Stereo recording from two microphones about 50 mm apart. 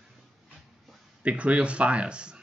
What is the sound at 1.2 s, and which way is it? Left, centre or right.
Speech, right.